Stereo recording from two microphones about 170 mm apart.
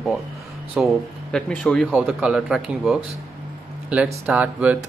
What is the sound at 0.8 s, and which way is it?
Speech, 5° right (ahead or behind).